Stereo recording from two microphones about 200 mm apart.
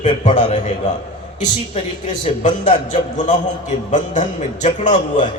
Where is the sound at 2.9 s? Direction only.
40° left (ahead or behind).